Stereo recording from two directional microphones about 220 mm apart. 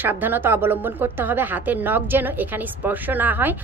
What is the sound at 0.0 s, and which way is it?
A woman's voice, 10° right (ahead or behind).